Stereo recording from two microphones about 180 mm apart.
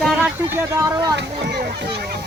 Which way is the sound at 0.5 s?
15° right (ahead or behind).